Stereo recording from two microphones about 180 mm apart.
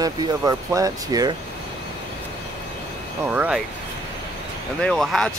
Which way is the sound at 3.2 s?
10° right (ahead or behind).